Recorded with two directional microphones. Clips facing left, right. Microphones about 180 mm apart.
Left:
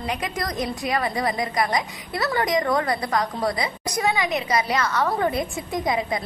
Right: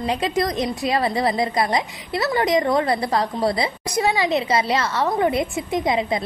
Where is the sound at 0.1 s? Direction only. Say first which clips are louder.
Right 7 dB; 25° right (ahead or behind).